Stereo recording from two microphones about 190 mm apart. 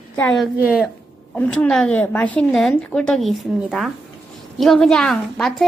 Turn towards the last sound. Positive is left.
turn(degrees=0)  # may be behind; listen again after turning